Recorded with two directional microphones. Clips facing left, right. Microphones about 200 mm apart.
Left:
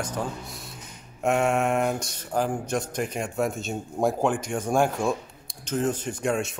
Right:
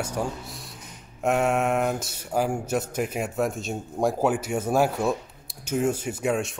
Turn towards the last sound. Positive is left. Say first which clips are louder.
# right 1 dB
turn(degrees=-5)  # may be behind; listen again after turning